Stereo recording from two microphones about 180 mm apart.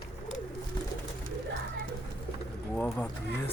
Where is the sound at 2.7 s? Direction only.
10° left (ahead or behind).